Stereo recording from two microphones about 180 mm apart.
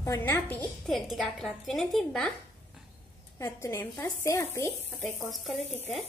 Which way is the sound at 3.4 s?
15° left (ahead or behind).